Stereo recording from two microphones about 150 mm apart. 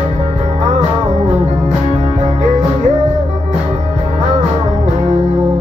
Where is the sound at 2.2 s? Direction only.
55° right (ahead or behind).